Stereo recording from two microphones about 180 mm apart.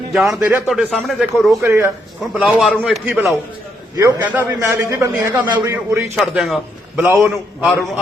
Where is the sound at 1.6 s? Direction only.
15° right (ahead or behind).